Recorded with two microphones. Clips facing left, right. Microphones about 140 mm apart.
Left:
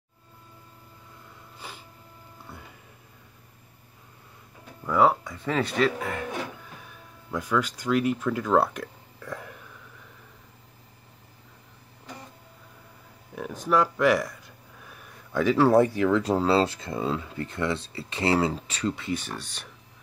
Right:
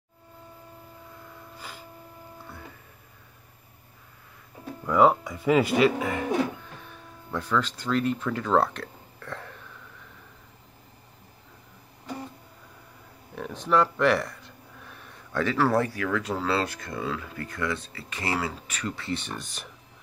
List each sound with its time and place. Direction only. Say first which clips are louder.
4.8 s speech: right 2 dB; centre (ahead or behind)
13.3 s speech: even; 10° left (ahead or behind); by 18.9 s 30° left (ahead or behind)
18.9 s speech: left 1 dB; 10° left (ahead or behind)